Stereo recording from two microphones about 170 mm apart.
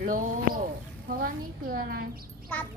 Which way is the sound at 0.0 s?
55° right (ahead or behind).